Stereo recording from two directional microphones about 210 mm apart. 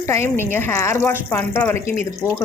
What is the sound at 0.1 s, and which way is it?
Speech, 10° left (ahead or behind).